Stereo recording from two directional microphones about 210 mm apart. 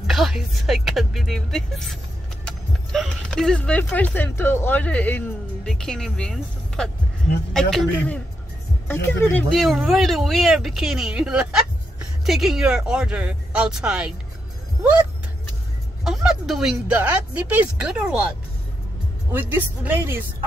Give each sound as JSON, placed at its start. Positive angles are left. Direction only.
{"t": 0.0, "sound": "speech", "side_deg": 0}
{"t": 16.0, "sound": "speech", "side_deg": 0}
{"t": 19.3, "sound": "speech", "side_deg": -10}